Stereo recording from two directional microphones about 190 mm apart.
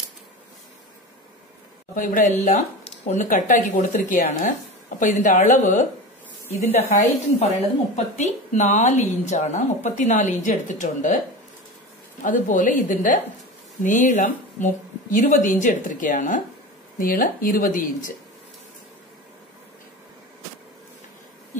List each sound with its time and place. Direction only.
2.0 s a woman's voice: 45° left (ahead or behind)
12.2 s a woman's voice: 40° left (ahead or behind)